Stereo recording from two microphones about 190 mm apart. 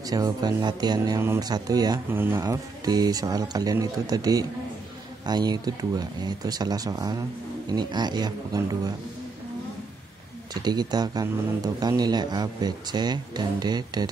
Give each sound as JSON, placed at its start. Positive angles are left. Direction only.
{"t": 0.0, "sound": "a man's voice", "side_deg": -20}
{"t": 10.5, "sound": "a man's voice", "side_deg": -20}